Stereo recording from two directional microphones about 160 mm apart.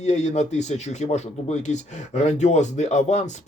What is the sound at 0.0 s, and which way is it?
Speech, 45° left (ahead or behind).